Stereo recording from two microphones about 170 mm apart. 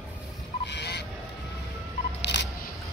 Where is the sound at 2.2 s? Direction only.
90° left.